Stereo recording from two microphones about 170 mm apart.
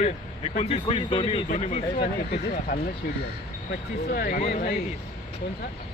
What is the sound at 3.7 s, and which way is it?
Speech, 65° left (ahead or behind).